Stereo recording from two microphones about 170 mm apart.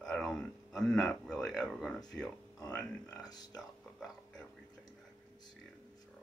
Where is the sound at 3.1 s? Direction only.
25° left (ahead or behind).